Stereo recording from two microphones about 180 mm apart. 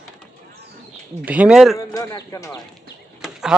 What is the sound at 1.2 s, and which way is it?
Speech, 5° right (ahead or behind).